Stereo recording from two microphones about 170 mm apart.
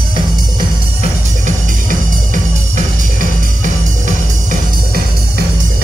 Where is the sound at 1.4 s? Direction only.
50° right (ahead or behind).